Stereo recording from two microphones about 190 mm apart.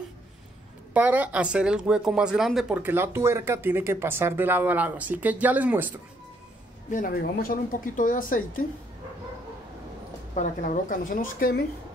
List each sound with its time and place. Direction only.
0.9 s speech: 10° right (ahead or behind)
6.9 s speech: 50° left (ahead or behind)
10.3 s speech: 40° left (ahead or behind)